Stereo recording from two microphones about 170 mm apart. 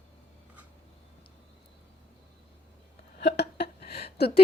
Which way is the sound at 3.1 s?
80° left.